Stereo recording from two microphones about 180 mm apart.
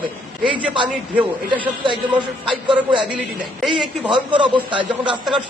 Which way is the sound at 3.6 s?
Centre (ahead or behind).